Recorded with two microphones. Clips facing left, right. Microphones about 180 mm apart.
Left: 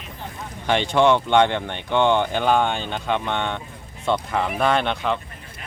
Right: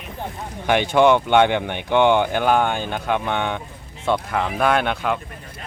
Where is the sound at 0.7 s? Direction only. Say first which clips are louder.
Right 2 dB; 10° right (ahead or behind).